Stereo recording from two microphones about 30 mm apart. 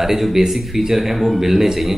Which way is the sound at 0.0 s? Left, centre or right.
Centre.